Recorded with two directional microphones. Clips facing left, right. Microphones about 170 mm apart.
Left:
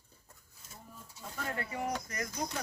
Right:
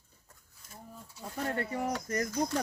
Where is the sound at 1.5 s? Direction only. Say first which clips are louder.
Right 3 dB; 40° right (ahead or behind).